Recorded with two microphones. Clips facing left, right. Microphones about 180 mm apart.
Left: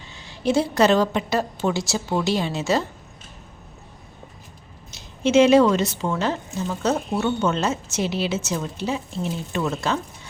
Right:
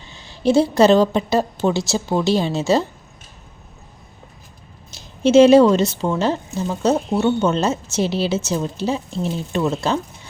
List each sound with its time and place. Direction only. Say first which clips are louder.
0.3 s a woman's voice: right 5 dB; 30° right (ahead or behind)
4.9 s a woman's voice: right 5 dB; 35° right (ahead or behind)